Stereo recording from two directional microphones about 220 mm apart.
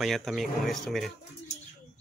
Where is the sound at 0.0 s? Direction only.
Centre (ahead or behind).